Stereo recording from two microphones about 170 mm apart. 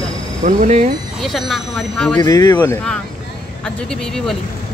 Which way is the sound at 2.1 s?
20° left (ahead or behind).